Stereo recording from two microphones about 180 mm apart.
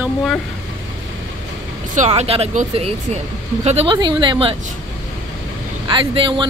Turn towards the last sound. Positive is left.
turn(degrees=-30)  # may be behind; listen again after turning